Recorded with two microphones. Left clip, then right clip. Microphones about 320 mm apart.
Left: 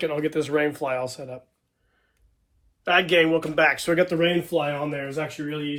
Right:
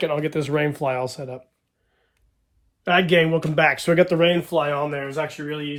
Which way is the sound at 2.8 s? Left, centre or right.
Right.